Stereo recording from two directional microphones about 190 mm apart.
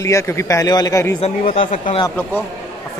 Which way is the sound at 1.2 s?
30° left (ahead or behind).